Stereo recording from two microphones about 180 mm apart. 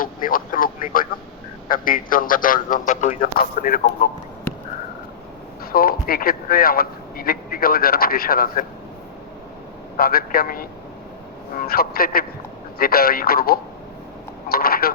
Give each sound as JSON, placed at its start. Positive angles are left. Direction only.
{"t": 0.0, "sound": "a man's voice", "side_deg": 50}
{"t": 5.7, "sound": "a man's voice", "side_deg": 55}
{"t": 10.0, "sound": "a man's voice", "side_deg": 55}